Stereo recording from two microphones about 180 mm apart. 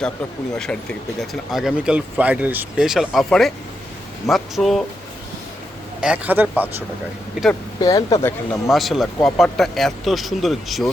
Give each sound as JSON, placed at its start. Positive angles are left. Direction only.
{"t": 0.6, "sound": "speech", "side_deg": 5}
{"t": 6.0, "sound": "speech", "side_deg": -10}
{"t": 7.8, "sound": "speech", "side_deg": 20}
{"t": 8.6, "sound": "speech", "side_deg": 0}